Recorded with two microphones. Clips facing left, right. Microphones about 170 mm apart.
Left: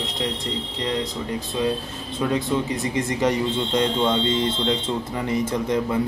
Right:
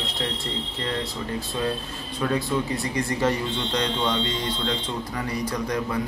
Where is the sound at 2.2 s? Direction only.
20° left (ahead or behind).